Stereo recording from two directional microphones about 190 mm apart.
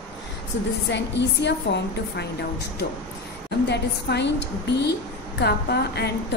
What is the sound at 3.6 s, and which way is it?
Speech, 65° left (ahead or behind).